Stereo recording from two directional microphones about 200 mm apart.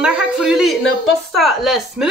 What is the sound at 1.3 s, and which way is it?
Speech, centre (ahead or behind).